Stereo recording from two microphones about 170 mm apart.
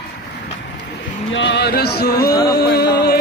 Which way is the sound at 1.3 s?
90° left.